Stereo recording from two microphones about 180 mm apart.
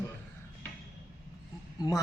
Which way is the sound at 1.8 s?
20° left (ahead or behind).